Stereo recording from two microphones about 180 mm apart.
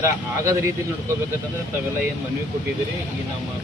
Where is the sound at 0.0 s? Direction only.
15° right (ahead or behind).